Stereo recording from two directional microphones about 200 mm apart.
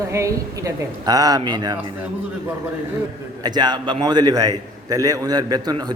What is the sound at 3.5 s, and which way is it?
A man's voice, 20° right (ahead or behind).